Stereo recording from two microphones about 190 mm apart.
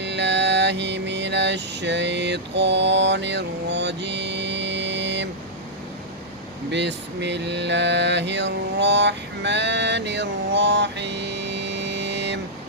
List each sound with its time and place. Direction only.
0.0 s mantra: 65° right (ahead or behind)
6.7 s mantra: 65° right (ahead or behind)